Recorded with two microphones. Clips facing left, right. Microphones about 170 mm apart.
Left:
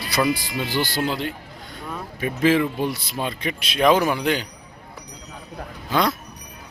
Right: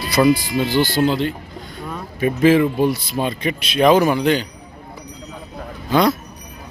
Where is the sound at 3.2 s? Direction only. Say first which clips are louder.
Right 3 dB; centre (ahead or behind).